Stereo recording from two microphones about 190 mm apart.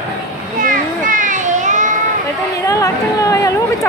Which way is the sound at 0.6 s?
45° right (ahead or behind).